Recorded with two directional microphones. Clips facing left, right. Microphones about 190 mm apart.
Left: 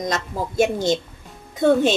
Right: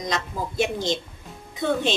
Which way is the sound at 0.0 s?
45° left (ahead or behind).